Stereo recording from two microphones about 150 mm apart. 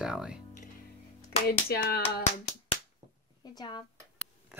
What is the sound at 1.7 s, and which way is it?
Hands, 90° left.